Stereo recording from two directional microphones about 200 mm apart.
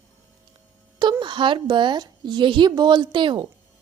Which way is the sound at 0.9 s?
20° right (ahead or behind).